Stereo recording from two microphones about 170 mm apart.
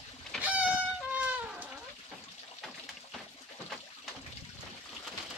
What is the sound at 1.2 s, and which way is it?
Cat, 10° right (ahead or behind).